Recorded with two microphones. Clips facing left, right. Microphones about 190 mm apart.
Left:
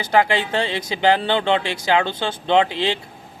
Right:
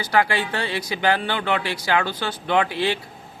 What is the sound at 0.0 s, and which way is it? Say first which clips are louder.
Speech: left 3 dB; 20° left (ahead or behind).